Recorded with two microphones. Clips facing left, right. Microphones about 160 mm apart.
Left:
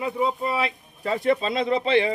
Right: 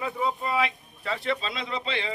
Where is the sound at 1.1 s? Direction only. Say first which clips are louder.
Left 7 dB; 45° left (ahead or behind).